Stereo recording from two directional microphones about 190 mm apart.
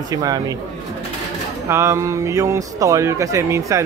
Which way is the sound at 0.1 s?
20° right (ahead or behind).